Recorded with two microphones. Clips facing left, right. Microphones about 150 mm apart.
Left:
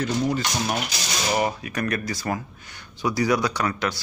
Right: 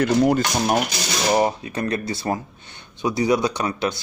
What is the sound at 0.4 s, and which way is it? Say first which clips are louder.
Speech: right 6 dB; 45° right (ahead or behind).